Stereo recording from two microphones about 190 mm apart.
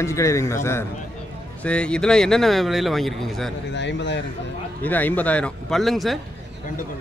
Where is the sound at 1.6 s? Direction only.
5° left (ahead or behind).